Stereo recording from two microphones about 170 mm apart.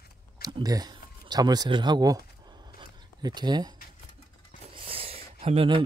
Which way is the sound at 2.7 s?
25° right (ahead or behind).